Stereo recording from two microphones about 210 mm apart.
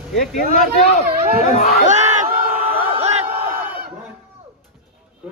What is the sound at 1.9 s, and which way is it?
Crowd, 35° right (ahead or behind).